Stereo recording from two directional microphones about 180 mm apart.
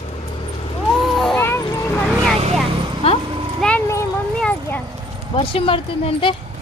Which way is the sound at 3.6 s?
10° left (ahead or behind).